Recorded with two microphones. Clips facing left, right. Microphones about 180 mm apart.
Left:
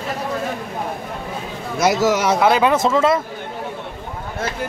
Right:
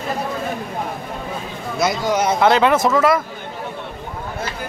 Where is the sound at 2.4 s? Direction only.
15° left (ahead or behind).